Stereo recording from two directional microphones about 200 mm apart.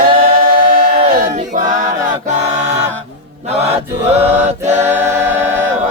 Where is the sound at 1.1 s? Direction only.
40° right (ahead or behind).